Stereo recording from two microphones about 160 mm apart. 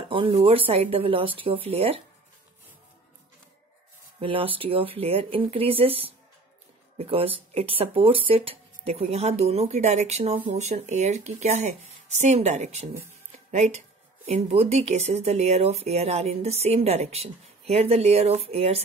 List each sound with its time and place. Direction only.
0.1 s speech: 30° right (ahead or behind)
4.2 s speech: 35° right (ahead or behind)